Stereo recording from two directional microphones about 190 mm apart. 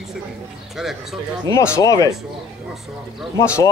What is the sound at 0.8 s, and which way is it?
Speech, centre (ahead or behind).